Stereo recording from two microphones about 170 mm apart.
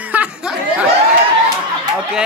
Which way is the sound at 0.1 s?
5° right (ahead or behind).